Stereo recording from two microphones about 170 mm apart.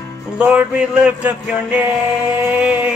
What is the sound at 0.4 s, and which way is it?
Music, 5° right (ahead or behind).